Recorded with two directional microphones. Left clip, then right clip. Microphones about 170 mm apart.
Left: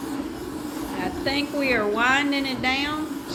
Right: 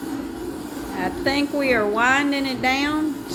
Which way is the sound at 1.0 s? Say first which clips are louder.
Right 4 dB; 35° right (ahead or behind).